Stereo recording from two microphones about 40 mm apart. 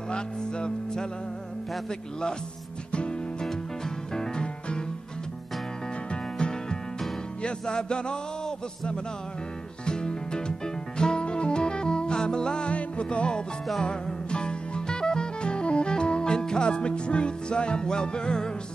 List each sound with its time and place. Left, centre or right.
0.1 s music: left
2.9 s music: left
6.0 s music: left
13.8 s saxophone: left